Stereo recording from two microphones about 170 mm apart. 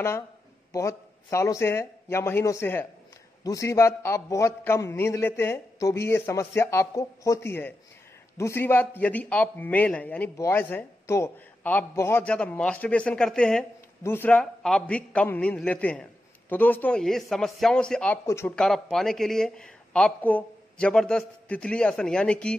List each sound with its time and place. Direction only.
0.7 s a man's voice: 15° left (ahead or behind)
18.5 s speech: 5° left (ahead or behind)